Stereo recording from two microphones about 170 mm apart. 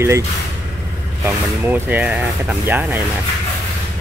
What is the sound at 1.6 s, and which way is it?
Speech, 10° right (ahead or behind).